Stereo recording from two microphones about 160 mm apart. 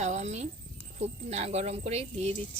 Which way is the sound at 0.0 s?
45° right (ahead or behind).